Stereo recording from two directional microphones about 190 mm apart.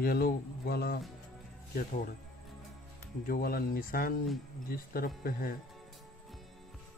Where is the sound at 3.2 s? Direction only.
50° left (ahead or behind).